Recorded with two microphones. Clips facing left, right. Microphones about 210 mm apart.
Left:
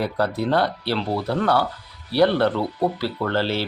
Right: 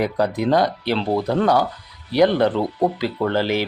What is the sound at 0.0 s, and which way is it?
Speech, 15° right (ahead or behind).